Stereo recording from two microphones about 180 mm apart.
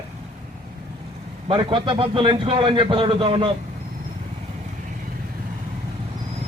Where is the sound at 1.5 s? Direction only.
30° right (ahead or behind).